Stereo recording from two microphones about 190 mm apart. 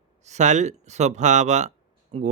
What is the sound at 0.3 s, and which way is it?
Speech, 40° right (ahead or behind).